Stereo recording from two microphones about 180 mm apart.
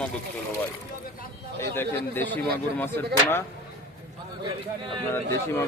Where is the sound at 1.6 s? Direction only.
10° left (ahead or behind).